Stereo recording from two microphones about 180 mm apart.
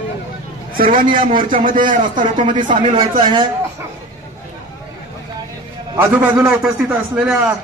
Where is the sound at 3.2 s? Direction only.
25° right (ahead or behind).